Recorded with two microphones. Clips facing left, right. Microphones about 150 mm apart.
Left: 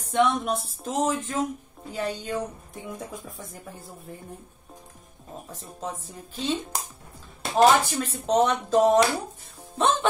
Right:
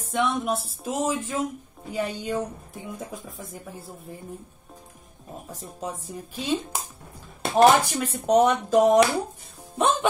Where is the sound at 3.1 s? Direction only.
Centre (ahead or behind).